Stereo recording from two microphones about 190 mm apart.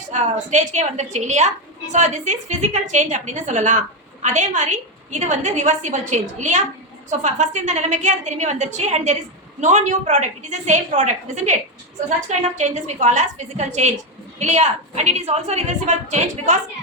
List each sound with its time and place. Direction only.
0.1 s a woman's voice: 40° right (ahead or behind)
12.5 s a woman's voice: 40° right (ahead or behind)